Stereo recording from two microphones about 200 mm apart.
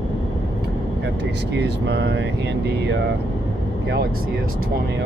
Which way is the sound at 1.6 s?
55° right (ahead or behind).